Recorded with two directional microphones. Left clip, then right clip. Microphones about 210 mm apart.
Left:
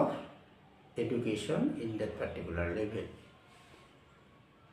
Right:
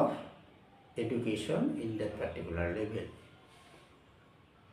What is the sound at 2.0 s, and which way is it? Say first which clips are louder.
Speech: even; 15° left (ahead or behind).